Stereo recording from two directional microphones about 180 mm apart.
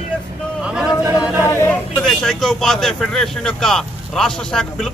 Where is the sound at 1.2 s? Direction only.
5° right (ahead or behind).